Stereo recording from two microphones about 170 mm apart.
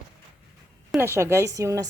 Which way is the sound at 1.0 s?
15° right (ahead or behind).